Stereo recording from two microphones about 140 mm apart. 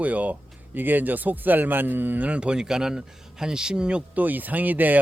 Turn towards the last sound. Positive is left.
turn(degrees=-10)  # may be behind; listen again after turning